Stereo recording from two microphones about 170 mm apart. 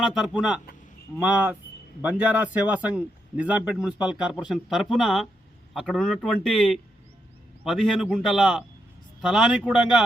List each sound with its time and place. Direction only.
0.0 s a man's voice: centre (ahead or behind)